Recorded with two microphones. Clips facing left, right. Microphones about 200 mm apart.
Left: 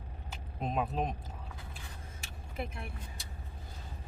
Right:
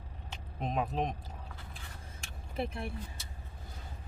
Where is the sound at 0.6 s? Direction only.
Centre (ahead or behind).